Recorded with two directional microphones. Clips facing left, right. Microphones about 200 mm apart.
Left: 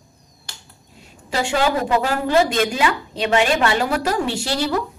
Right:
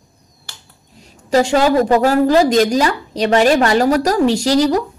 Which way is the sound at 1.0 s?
40° right (ahead or behind).